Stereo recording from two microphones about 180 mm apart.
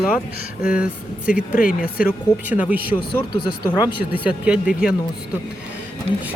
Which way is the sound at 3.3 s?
25° left (ahead or behind).